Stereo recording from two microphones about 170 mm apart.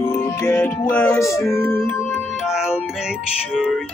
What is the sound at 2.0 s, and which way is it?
Music, centre (ahead or behind).